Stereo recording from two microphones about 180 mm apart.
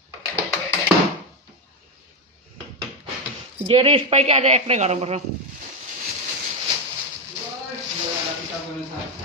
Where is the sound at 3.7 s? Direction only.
30° right (ahead or behind).